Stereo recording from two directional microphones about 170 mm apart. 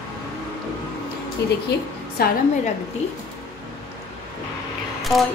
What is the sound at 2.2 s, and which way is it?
Speech, 65° left (ahead or behind).